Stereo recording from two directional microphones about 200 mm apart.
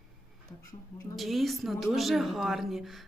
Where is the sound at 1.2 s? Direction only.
Centre (ahead or behind).